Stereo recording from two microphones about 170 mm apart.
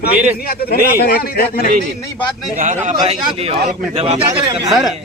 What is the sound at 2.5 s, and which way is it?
A man's voice, 45° right (ahead or behind).